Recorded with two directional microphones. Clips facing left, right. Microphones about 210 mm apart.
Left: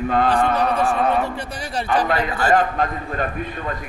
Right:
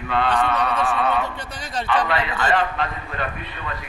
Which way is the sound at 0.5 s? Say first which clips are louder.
Left 3 dB; 30° left (ahead or behind).